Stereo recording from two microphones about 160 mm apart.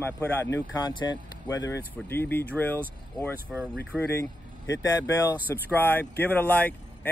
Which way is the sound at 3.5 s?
Centre (ahead or behind).